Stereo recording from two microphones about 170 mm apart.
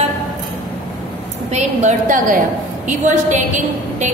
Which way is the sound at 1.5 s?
45° right (ahead or behind).